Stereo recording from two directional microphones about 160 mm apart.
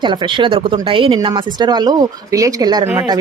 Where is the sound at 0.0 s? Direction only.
30° right (ahead or behind).